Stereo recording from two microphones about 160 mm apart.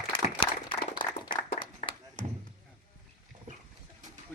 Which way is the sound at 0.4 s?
35° left (ahead or behind).